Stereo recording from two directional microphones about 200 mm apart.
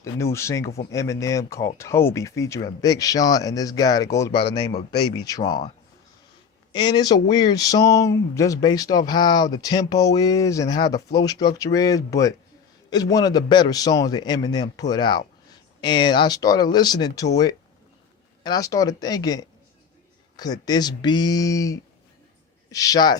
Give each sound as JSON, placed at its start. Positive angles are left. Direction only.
{"t": 0.0, "sound": "speech", "side_deg": 15}
{"t": 4.4, "sound": "a man's voice", "side_deg": 55}
{"t": 5.2, "sound": "speech", "side_deg": 20}
{"t": 6.7, "sound": "speech", "side_deg": 20}